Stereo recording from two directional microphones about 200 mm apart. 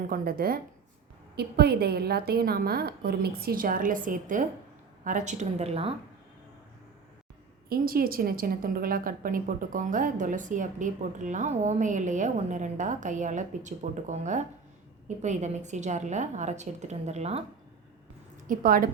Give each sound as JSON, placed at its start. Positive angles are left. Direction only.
{"t": 0.1, "sound": "a woman's voice", "side_deg": -50}
{"t": 7.7, "sound": "a woman's voice", "side_deg": -45}
{"t": 18.4, "sound": "a woman's voice", "side_deg": -45}